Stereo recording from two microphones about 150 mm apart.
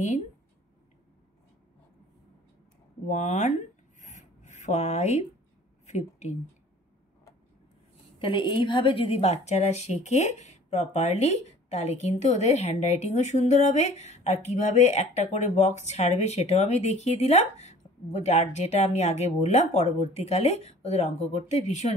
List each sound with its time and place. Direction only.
3.1 s a woman's voice: 55° left (ahead or behind)
4.0 s writing: 55° left (ahead or behind)
5.9 s a woman's voice: 50° left (ahead or behind)
8.2 s a woman's voice: 35° left (ahead or behind)